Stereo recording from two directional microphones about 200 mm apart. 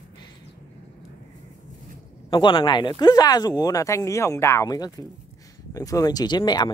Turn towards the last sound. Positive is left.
turn(degrees=20)  # may be behind; listen again after turning